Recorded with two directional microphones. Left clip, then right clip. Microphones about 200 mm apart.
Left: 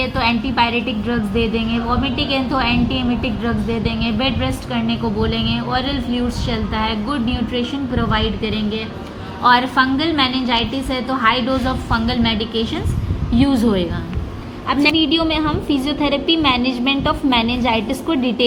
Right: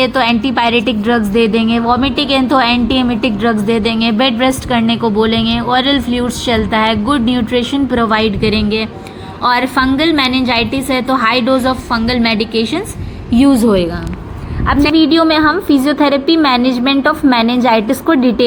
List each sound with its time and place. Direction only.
0.0 s a woman's voice: 35° right (ahead or behind)
9.4 s a woman's voice: 25° right (ahead or behind)